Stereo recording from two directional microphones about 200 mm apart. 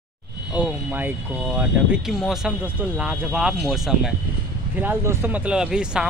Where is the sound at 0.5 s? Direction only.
10° right (ahead or behind).